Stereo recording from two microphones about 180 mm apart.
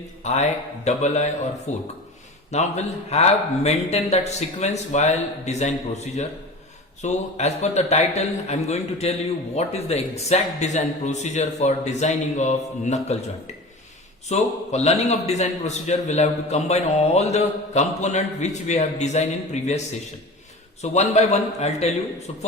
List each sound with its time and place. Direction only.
0.2 s a man's voice: 40° left (ahead or behind)
14.3 s a man's voice: 40° left (ahead or behind)
20.8 s a man's voice: 40° left (ahead or behind)